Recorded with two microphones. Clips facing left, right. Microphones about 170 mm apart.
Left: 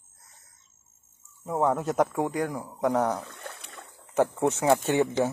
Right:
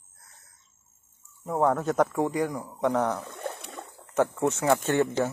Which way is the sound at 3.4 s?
30° right (ahead or behind).